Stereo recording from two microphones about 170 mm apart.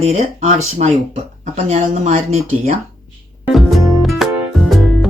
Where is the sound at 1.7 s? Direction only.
40° right (ahead or behind).